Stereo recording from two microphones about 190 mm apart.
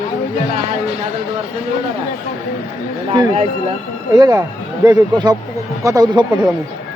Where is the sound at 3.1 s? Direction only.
25° right (ahead or behind).